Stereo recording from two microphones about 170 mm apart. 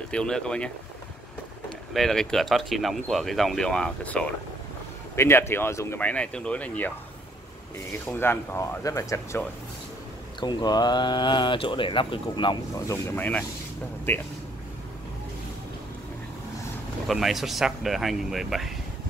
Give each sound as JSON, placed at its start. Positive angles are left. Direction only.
{"t": 0.1, "sound": "speech", "side_deg": 5}
{"t": 2.0, "sound": "speech", "side_deg": 0}
{"t": 8.1, "sound": "speech", "side_deg": 15}
{"t": 10.4, "sound": "speech", "side_deg": 25}
{"t": 12.9, "sound": "speech", "side_deg": 10}
{"t": 17.1, "sound": "speech", "side_deg": 0}